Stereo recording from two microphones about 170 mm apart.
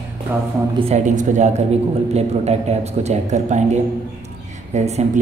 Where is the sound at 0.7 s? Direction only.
40° right (ahead or behind).